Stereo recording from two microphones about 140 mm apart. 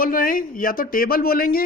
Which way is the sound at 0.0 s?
80° left.